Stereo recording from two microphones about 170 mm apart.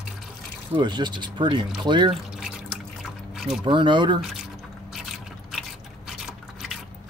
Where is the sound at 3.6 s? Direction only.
30° right (ahead or behind).